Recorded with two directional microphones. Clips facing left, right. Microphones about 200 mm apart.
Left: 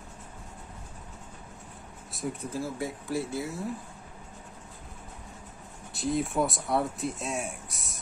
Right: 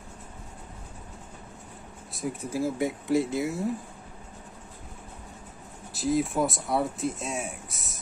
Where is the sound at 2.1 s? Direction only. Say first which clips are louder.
Right 2 dB; centre (ahead or behind).